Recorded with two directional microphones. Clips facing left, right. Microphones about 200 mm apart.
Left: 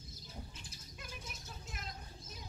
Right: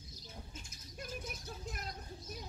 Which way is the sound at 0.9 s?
45° right (ahead or behind).